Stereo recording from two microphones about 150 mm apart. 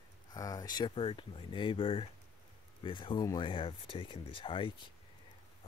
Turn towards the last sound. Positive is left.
turn(degrees=35)  # may be behind; listen again after turning